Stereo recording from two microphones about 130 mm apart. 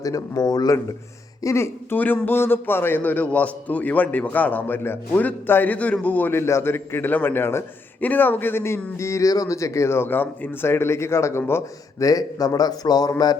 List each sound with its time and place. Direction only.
0.0 s a man's voice: 30° left (ahead or behind)